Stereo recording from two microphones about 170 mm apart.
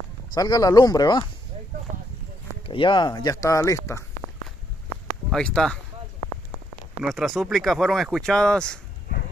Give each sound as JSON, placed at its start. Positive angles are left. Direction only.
{"t": 0.3, "sound": "speech", "side_deg": 20}
{"t": 2.6, "sound": "speech", "side_deg": 30}
{"t": 5.3, "sound": "speech", "side_deg": 5}
{"t": 7.0, "sound": "speech", "side_deg": 0}